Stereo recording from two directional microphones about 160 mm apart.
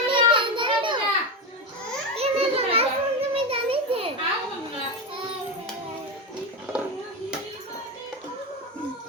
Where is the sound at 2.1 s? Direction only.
40° right (ahead or behind).